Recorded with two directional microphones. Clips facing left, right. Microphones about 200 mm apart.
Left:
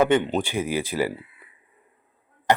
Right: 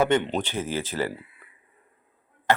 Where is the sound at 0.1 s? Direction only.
10° left (ahead or behind).